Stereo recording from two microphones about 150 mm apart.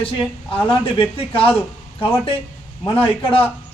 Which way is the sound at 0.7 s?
35° left (ahead or behind).